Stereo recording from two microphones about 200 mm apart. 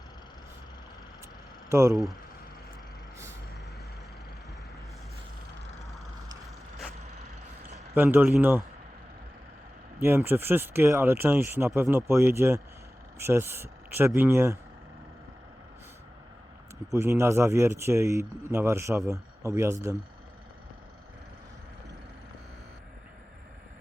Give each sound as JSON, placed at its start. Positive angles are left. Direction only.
{"t": 1.7, "sound": "speech", "side_deg": -15}
{"t": 5.9, "sound": "a sound", "side_deg": 0}
{"t": 7.0, "sound": "vehicle", "side_deg": -35}
{"t": 7.9, "sound": "speech", "side_deg": -10}
{"t": 10.0, "sound": "speech", "side_deg": -10}
{"t": 16.9, "sound": "speech", "side_deg": -15}